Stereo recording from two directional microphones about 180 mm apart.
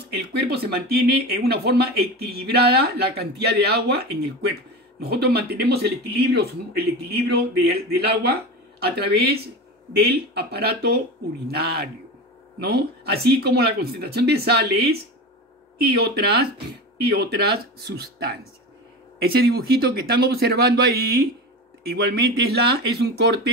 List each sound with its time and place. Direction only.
0.1 s speech: 65° right (ahead or behind)